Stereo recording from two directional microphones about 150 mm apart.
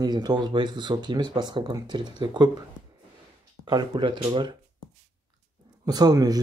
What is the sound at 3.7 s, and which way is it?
Speech, 30° right (ahead or behind).